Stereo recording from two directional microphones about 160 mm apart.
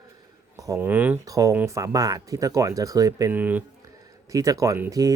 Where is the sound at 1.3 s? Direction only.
20° right (ahead or behind).